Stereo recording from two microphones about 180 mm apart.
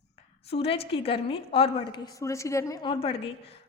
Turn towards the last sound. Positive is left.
turn(degrees=25)  # may be behind; listen again after turning